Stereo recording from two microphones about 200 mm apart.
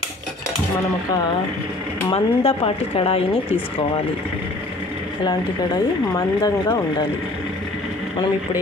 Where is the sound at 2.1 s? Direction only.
30° left (ahead or behind).